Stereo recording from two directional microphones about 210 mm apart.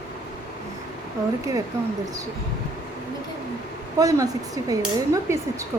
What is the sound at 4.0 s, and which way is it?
Speech, 15° right (ahead or behind).